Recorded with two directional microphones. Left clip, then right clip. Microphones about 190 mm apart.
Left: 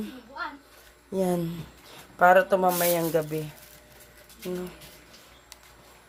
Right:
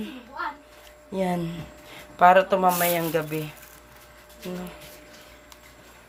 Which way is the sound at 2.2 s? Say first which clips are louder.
Right 2 dB; 5° left (ahead or behind).